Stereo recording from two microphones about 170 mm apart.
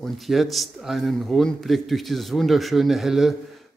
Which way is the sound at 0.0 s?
Centre (ahead or behind).